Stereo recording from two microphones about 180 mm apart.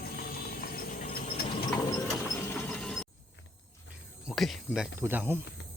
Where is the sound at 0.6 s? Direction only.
55° left (ahead or behind).